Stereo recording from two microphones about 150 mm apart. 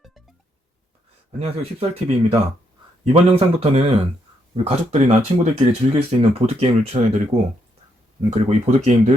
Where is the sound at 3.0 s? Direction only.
40° right (ahead or behind).